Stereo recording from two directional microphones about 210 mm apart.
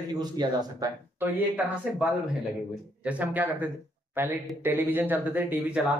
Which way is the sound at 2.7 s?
5° right (ahead or behind).